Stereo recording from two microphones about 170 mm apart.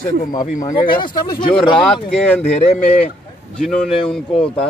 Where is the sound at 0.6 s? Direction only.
25° left (ahead or behind).